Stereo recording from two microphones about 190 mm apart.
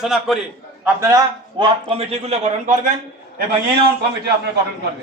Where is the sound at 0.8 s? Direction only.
15° right (ahead or behind); by 2.8 s 35° right (ahead or behind).